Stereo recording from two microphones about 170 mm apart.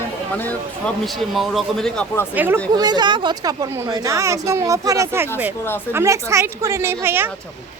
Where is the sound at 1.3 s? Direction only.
Centre (ahead or behind).